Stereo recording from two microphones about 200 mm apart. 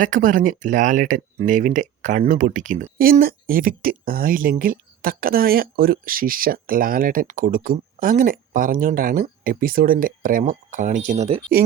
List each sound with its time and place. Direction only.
0.0 s speech: 40° right (ahead or behind)